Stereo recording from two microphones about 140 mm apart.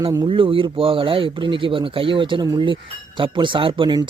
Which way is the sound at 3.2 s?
35° right (ahead or behind).